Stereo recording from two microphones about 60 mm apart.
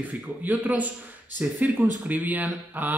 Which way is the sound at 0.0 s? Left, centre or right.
Right.